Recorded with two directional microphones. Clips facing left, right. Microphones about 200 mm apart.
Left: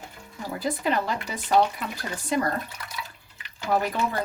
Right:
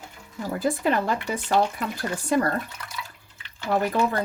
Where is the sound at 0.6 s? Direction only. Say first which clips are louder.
Right 3 dB; 45° right (ahead or behind).